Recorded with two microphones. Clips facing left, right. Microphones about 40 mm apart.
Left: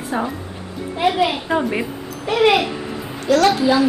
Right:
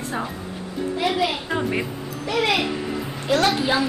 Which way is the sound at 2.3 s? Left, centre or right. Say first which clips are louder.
Left 7 dB; left.